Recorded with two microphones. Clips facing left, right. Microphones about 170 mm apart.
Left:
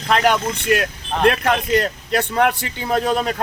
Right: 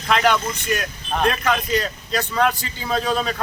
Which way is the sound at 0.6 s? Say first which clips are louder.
Left 6 dB; 65° left (ahead or behind).